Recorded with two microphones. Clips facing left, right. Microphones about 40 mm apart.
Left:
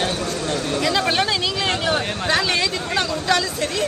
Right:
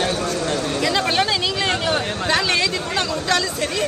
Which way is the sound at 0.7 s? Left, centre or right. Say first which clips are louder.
Left 2 dB; centre.